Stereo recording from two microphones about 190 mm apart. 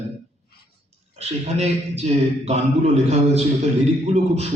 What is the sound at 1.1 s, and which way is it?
A man's voice, 35° right (ahead or behind).